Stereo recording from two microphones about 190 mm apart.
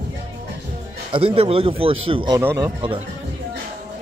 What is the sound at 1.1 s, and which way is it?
Speech, 30° right (ahead or behind).